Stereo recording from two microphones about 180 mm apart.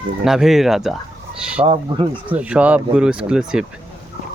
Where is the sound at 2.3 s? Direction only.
5° right (ahead or behind).